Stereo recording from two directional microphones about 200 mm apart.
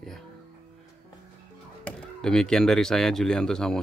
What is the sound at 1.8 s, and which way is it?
Speech, 5° left (ahead or behind).